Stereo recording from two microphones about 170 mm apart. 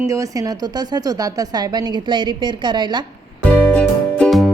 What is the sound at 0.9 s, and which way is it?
A woman's voice, 20° right (ahead or behind).